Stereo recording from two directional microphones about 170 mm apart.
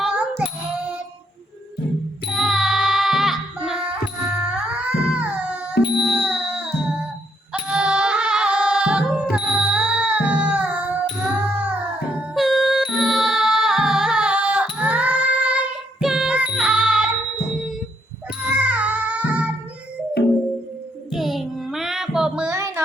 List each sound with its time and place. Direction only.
0.0 s child singing: 5° right (ahead or behind)
2.3 s child singing: centre (ahead or behind)
4.4 s music: 5° right (ahead or behind)
18.6 s music: 10° right (ahead or behind)
21.1 s music: centre (ahead or behind)
22.5 s music: 20° right (ahead or behind)